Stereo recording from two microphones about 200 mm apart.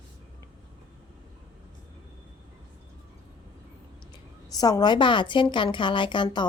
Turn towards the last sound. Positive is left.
turn(degrees=25)  # may be behind; listen again after turning